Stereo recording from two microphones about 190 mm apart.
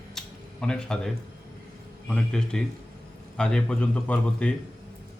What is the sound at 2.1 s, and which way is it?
Speech, 5° left (ahead or behind).